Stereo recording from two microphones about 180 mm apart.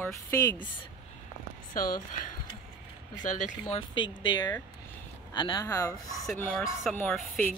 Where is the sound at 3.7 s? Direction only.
25° left (ahead or behind).